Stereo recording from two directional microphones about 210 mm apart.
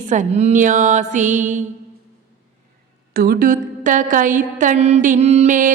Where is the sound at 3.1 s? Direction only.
45° right (ahead or behind).